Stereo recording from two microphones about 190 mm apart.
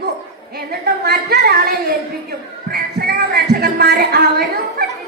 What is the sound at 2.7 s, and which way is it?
Music, 55° right (ahead or behind).